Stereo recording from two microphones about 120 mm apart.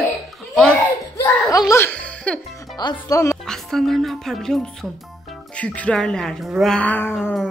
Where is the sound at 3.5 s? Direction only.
Centre (ahead or behind).